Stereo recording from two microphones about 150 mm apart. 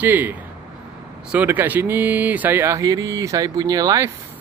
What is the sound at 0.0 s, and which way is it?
Speech, 10° right (ahead or behind).